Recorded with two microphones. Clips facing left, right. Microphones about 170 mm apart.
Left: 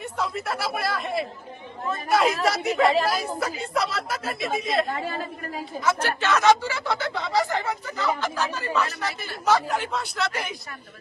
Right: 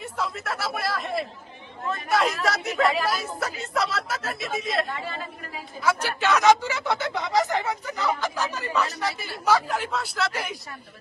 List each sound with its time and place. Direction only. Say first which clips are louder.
0.2 s a man's voice: left 2 dB; centre (ahead or behind)
4.9 s a woman's voice: left 4 dB; 40° left (ahead or behind)
5.8 s a sound: right 1 dB; 10° right (ahead or behind)
8.9 s a man's voice: right 1 dB; 15° right (ahead or behind)